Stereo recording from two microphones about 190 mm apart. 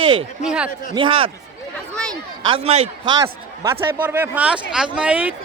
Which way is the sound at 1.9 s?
5° left (ahead or behind).